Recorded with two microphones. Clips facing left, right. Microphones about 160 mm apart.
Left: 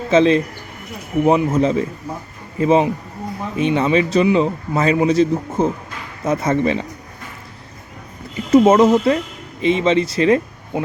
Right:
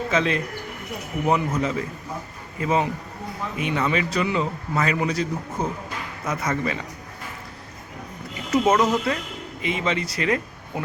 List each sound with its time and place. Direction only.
0.1 s speech: 25° left (ahead or behind)
8.4 s speech: 30° left (ahead or behind)